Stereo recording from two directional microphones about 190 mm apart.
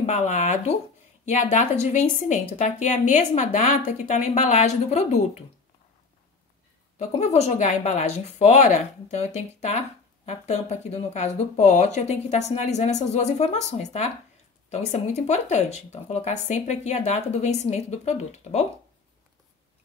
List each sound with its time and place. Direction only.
0.0 s speech: 40° left (ahead or behind)
7.0 s speech: 35° left (ahead or behind)